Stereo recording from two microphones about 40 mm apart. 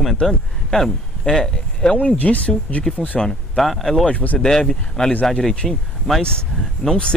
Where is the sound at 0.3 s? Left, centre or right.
Centre.